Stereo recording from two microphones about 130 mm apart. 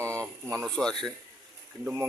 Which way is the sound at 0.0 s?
20° right (ahead or behind).